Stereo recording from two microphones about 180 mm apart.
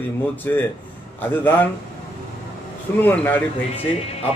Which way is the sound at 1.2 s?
10° left (ahead or behind).